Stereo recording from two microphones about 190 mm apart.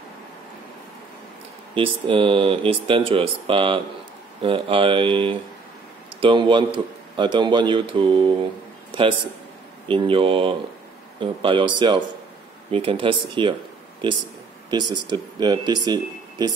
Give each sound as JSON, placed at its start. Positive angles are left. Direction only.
{"t": 1.8, "sound": "speech", "side_deg": -30}